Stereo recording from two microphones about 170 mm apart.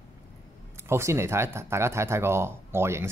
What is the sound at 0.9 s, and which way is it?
Speech, 15° right (ahead or behind).